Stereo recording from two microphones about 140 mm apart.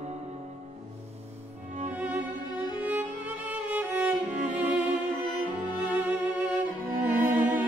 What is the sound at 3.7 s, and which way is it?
Music, 10° right (ahead or behind).